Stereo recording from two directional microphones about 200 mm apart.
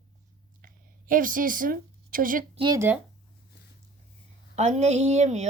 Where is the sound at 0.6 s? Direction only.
45° right (ahead or behind).